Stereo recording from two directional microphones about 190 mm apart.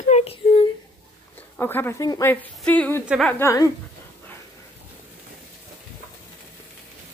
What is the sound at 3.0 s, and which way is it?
Speech, 5° right (ahead or behind).